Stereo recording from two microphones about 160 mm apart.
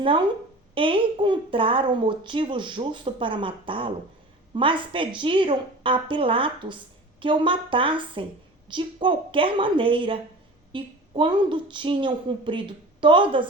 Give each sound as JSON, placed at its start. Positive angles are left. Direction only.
{"t": 0.0, "sound": "a woman's voice", "side_deg": -30}